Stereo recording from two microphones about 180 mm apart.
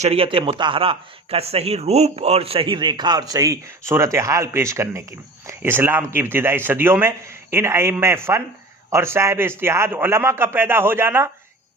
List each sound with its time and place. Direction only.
0.0 s a man's voice: 30° right (ahead or behind); by 11.3 s 15° right (ahead or behind)